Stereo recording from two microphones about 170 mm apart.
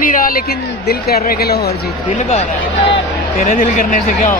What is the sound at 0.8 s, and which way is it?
Speech, 65° left (ahead or behind).